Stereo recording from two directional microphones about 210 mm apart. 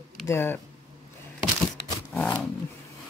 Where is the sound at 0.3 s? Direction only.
10° left (ahead or behind).